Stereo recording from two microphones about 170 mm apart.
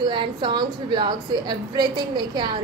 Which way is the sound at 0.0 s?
25° right (ahead or behind).